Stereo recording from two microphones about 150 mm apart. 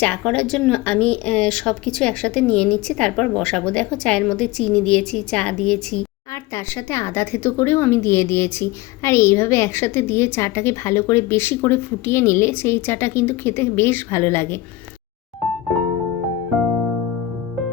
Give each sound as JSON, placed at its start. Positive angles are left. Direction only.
{"t": 0.0, "sound": "speech", "side_deg": 5}
{"t": 6.9, "sound": "speech", "side_deg": 15}